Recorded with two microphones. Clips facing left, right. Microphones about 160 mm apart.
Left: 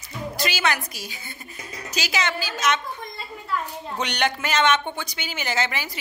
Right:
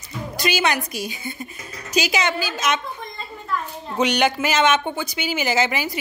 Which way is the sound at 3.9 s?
5° right (ahead or behind).